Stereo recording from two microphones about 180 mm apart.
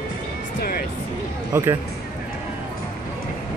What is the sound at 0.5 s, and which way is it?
Speech, 55° left (ahead or behind).